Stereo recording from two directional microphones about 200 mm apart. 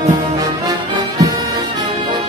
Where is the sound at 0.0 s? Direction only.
20° right (ahead or behind).